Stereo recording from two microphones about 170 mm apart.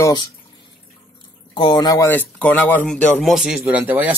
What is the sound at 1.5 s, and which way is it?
Speech, 25° left (ahead or behind).